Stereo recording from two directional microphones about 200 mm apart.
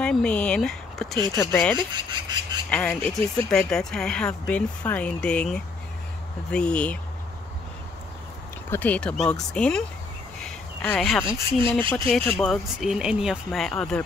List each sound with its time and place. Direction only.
0.0 s speech: 5° left (ahead or behind)
1.1 s speech: 20° right (ahead or behind)
1.4 s speech: 10° left (ahead or behind)
1.8 s speech: 20° right (ahead or behind)
2.7 s speech: 5° left (ahead or behind)
8.6 s speech: 10° left (ahead or behind)
10.4 s a sound: 5° left (ahead or behind)
11.2 s speech: 25° right (ahead or behind)
12.1 s speech: 10° left (ahead or behind)
12.8 s speech: 5° right (ahead or behind)